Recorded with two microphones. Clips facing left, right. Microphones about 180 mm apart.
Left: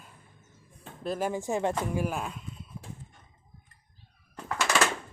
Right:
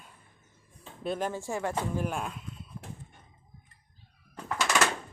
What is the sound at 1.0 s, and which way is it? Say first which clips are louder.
Speech: left 2 dB; 5° left (ahead or behind).